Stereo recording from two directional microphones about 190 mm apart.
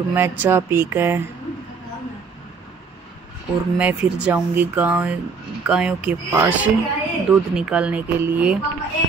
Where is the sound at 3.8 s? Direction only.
5° right (ahead or behind).